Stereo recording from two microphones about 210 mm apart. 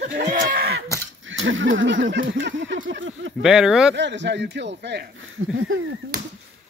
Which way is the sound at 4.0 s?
55° right (ahead or behind).